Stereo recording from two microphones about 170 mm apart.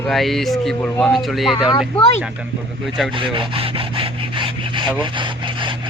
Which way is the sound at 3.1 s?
30° right (ahead or behind).